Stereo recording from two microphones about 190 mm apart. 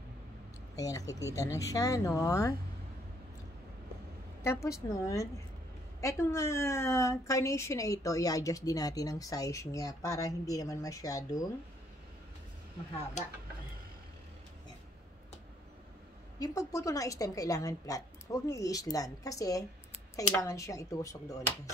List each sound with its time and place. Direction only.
0.7 s a woman's voice: 20° left (ahead or behind)
4.4 s a woman's voice: 15° left (ahead or behind)
16.3 s a woman's voice: 15° left (ahead or behind)